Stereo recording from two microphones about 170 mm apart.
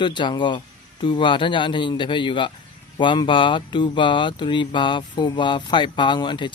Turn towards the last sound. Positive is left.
turn(degrees=25)  # may be behind; listen again after turning